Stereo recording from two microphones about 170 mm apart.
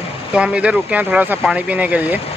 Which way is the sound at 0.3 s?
5° right (ahead or behind).